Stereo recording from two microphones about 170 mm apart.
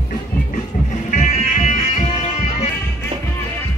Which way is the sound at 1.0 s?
45° left (ahead or behind).